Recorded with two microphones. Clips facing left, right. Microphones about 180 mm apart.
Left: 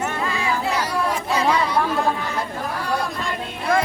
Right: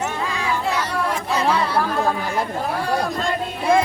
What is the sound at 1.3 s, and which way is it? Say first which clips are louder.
Chatter: even; 10° left (ahead or behind).